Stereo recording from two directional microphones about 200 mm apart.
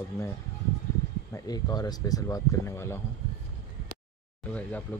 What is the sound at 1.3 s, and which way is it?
Speech, 20° left (ahead or behind).